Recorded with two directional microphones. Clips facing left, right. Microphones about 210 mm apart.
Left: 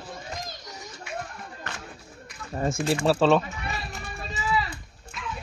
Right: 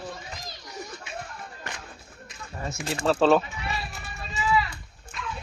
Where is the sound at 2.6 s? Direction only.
50° left (ahead or behind).